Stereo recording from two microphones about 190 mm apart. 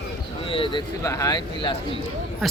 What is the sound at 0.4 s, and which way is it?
Speech, 25° left (ahead or behind).